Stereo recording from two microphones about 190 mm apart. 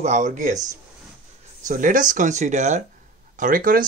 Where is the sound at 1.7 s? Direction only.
45° right (ahead or behind).